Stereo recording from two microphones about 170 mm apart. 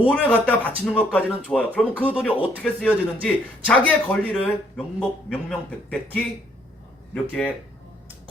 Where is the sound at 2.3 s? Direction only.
10° right (ahead or behind).